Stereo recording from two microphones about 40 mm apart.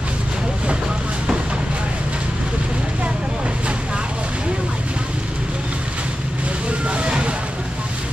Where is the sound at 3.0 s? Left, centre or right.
Right.